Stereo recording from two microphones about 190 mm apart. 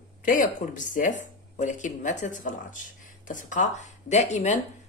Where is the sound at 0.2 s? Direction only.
45° left (ahead or behind).